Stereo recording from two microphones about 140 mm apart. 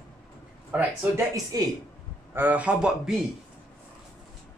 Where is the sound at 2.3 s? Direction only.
10° right (ahead or behind).